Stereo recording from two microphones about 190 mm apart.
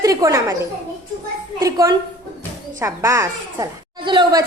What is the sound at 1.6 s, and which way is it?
A woman's voice, 15° right (ahead or behind).